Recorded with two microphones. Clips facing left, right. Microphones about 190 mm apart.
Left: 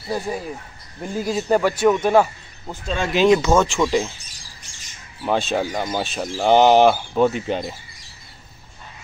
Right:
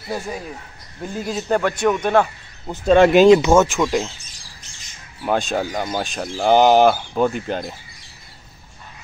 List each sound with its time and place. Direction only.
1.2 s speech: 5° left (ahead or behind)
2.9 s speech: 60° right (ahead or behind)
3.3 s speech: 15° right (ahead or behind)
3.6 s speech: centre (ahead or behind)
5.2 s speech: centre (ahead or behind)